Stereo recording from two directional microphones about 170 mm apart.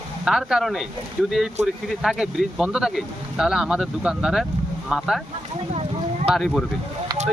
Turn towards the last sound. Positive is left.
turn(degrees=0)  # may be behind; listen again after turning